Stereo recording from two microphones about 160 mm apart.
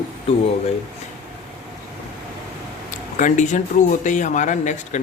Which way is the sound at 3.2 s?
50° left (ahead or behind).